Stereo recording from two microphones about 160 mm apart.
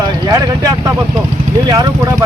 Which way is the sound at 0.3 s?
20° right (ahead or behind).